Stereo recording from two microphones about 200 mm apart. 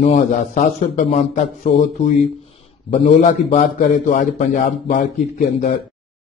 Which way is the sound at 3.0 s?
40° left (ahead or behind).